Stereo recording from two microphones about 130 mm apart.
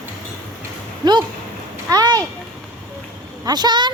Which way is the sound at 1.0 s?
35° right (ahead or behind).